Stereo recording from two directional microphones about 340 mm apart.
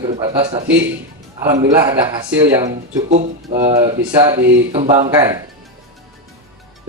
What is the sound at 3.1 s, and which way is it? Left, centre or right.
Speech, right.